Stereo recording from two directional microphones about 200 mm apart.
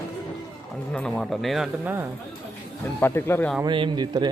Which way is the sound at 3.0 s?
10° left (ahead or behind).